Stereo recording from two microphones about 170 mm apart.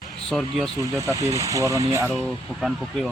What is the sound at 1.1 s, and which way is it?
Speech, 20° right (ahead or behind).